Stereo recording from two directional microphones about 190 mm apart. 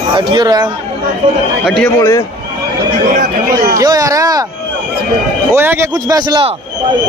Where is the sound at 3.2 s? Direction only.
55° right (ahead or behind).